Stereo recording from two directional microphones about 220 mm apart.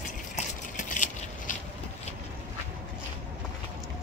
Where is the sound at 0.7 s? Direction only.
35° left (ahead or behind).